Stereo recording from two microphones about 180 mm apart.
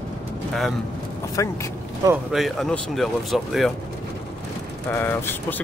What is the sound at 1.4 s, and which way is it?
Speech, 15° left (ahead or behind).